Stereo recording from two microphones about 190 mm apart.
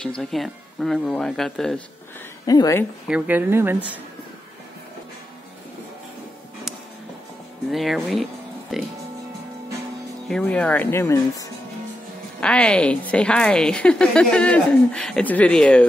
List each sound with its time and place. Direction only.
0.0 s a woman's voice: 5° left (ahead or behind)
2.4 s a woman's voice: 20° left (ahead or behind)
3.1 s speech: 5° right (ahead or behind)
7.7 s a woman's voice: centre (ahead or behind)
10.2 s a woman's voice: 5° left (ahead or behind)